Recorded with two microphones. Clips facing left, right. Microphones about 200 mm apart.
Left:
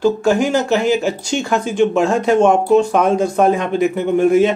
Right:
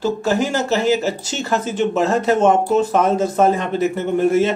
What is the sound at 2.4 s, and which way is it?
Speech, 5° right (ahead or behind).